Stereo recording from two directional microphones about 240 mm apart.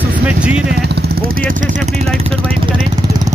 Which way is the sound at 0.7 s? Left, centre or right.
Right.